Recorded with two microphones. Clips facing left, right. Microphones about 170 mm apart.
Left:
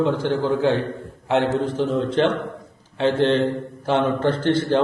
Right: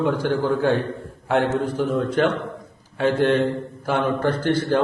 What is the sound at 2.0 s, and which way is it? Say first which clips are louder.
A man's voice: left 1 dB; 25° left (ahead or behind).